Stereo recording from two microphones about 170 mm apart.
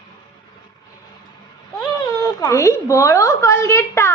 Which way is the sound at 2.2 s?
20° left (ahead or behind).